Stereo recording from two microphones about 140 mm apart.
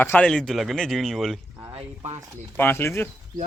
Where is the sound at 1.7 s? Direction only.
45° right (ahead or behind).